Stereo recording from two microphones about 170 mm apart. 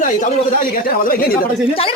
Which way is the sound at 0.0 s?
50° left (ahead or behind).